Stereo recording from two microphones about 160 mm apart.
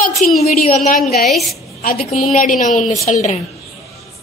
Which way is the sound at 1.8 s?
65° left (ahead or behind).